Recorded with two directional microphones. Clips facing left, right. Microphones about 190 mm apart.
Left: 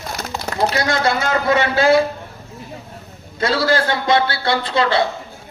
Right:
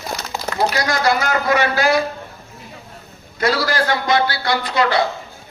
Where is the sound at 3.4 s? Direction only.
25° left (ahead or behind).